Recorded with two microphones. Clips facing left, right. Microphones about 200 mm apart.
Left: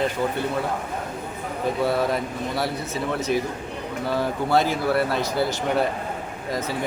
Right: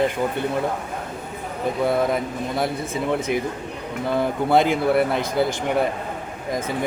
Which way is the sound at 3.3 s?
15° right (ahead or behind).